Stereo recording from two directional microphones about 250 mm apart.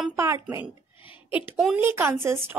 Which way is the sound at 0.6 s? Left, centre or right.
Centre.